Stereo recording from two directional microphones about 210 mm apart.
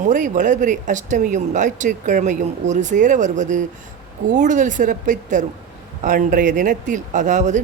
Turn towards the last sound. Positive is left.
turn(degrees=-35)  # may be behind; listen again after turning